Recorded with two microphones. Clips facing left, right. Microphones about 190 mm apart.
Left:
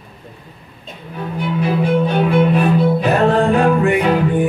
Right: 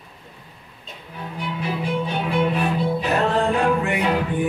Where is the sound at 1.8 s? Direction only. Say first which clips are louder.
Left 9 dB; 60° left (ahead or behind).